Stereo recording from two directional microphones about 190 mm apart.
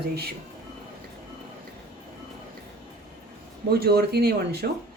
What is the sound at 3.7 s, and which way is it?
Speech, 55° right (ahead or behind).